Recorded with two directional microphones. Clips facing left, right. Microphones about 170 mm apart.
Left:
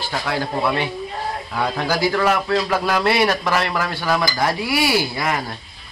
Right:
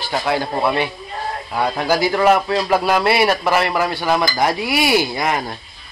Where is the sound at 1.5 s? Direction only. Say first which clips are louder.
Right 4 dB; 15° right (ahead or behind).